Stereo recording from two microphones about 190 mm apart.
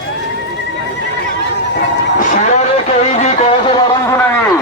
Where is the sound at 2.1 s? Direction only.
40° left (ahead or behind).